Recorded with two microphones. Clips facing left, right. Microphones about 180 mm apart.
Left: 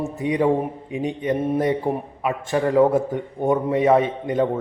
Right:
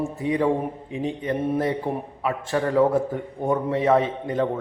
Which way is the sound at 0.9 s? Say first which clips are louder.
Left 3 dB; 15° left (ahead or behind).